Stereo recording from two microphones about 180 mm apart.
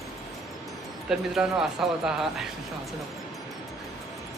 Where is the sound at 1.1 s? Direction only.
5° right (ahead or behind).